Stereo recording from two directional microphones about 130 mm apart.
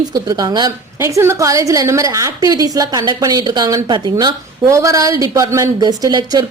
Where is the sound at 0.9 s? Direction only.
20° right (ahead or behind).